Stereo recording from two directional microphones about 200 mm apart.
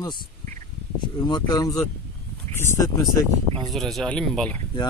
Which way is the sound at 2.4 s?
35° right (ahead or behind).